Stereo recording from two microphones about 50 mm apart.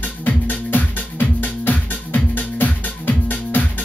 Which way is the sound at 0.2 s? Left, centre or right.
Left.